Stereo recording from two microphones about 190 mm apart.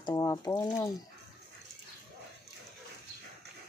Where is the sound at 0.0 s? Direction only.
20° left (ahead or behind).